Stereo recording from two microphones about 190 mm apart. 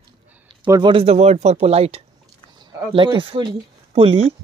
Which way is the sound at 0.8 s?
30° right (ahead or behind).